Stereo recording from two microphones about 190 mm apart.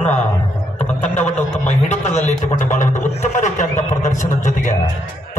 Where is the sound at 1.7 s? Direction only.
35° left (ahead or behind).